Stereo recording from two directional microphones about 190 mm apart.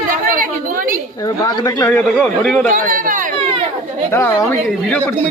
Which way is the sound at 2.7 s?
45° right (ahead or behind).